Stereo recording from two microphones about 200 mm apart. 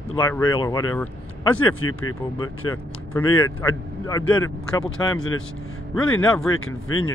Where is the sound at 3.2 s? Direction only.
90° left.